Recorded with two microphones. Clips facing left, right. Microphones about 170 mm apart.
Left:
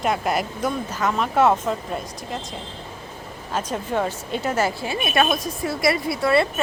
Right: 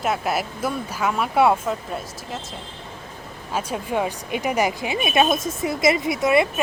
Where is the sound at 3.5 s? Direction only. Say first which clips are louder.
Even; 10° right (ahead or behind).